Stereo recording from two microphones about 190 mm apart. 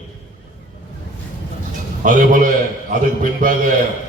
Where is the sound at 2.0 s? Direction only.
45° right (ahead or behind).